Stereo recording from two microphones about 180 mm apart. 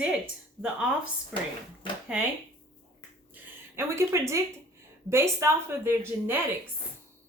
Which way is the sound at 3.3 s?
15° right (ahead or behind).